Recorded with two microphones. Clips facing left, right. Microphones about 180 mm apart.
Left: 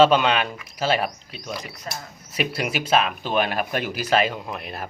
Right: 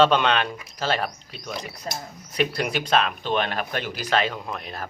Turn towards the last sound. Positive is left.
turn(degrees=5)  # may be behind; listen again after turning